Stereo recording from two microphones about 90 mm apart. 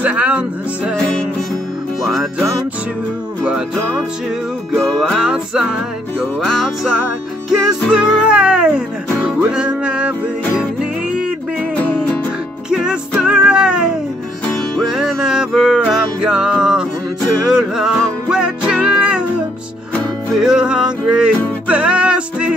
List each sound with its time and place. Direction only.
0.0 s speech: 15° right (ahead or behind)
2.0 s music: 5° right (ahead or behind)
4.7 s music: 5° left (ahead or behind); by 11.3 s 10° right (ahead or behind)
11.7 s music: 15° left (ahead or behind)
12.6 s music: 10° right (ahead or behind)
20.3 s speech: 5° right (ahead or behind)
21.6 s music: 15° right (ahead or behind)